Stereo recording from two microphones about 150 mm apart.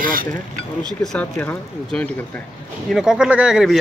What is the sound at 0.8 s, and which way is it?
Speech, 5° left (ahead or behind).